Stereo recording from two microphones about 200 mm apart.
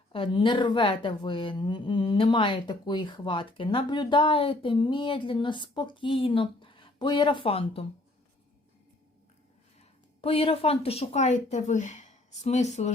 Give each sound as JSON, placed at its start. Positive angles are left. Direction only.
{"t": 0.1, "sound": "speech", "side_deg": 25}
{"t": 10.2, "sound": "speech", "side_deg": 30}